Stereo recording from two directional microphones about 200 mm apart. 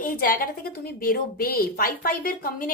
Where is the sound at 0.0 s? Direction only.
45° left (ahead or behind).